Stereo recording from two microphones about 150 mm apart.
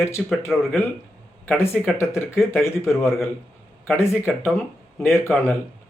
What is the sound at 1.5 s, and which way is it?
Speech, 15° left (ahead or behind).